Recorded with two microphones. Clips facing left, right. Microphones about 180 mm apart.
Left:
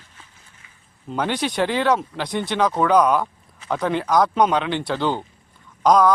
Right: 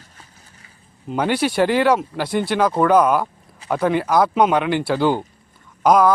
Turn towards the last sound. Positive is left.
turn(degrees=-5)  # may be behind; listen again after turning